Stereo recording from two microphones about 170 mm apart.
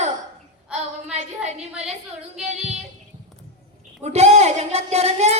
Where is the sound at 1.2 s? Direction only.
40° right (ahead or behind).